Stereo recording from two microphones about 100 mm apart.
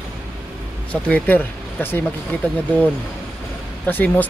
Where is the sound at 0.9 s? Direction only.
15° left (ahead or behind).